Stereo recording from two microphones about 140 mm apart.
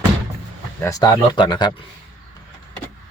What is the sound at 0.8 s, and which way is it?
Speech, 25° left (ahead or behind).